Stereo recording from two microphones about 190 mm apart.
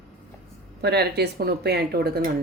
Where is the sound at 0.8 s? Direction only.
60° right (ahead or behind).